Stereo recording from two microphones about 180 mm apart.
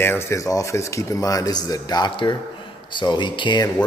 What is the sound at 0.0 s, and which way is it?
Speech, 15° left (ahead or behind).